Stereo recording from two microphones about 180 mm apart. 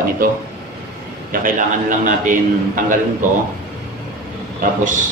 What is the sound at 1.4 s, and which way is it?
A man's voice, 50° right (ahead or behind).